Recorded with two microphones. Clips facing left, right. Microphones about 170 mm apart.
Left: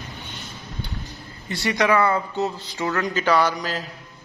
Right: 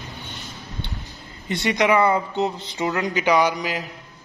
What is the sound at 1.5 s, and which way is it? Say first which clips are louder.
Speech: right 1 dB; 20° right (ahead or behind).